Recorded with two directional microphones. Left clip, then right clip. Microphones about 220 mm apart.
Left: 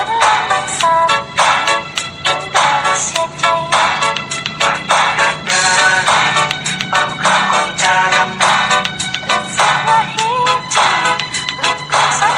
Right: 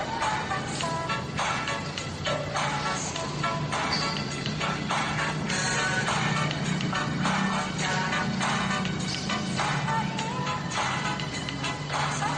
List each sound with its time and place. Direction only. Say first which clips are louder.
0.2 s music: left 18 dB; 45° left (ahead or behind)